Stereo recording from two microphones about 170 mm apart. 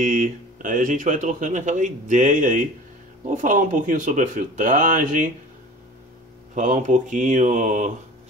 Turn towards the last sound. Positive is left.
turn(degrees=-45)  # may be behind; listen again after turning